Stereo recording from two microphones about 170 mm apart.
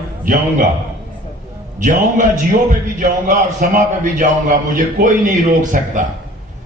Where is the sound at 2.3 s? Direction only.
50° right (ahead or behind).